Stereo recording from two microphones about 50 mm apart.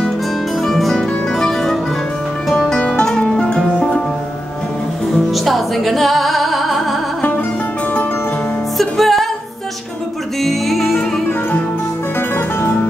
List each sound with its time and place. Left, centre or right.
0.6 s music: centre
3.0 s music: centre
5.3 s music: centre
7.2 s music: left
8.7 s music: centre
10.4 s music: centre
12.4 s music: left